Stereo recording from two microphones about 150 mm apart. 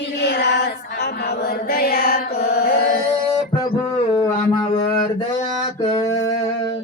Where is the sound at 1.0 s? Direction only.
90° left.